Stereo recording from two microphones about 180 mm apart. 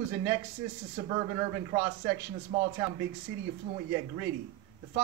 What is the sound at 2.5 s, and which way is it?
Speech, 35° right (ahead or behind).